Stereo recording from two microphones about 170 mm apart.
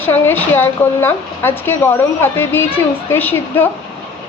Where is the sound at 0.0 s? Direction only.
10° left (ahead or behind).